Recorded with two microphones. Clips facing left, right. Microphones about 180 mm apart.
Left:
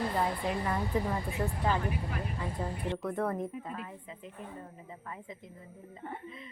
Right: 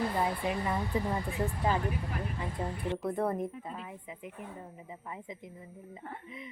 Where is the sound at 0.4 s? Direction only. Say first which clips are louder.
Even; 10° right (ahead or behind).